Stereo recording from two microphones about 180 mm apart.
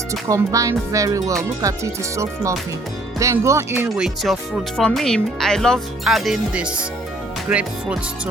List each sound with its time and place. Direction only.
0.1 s speech: 15° right (ahead or behind)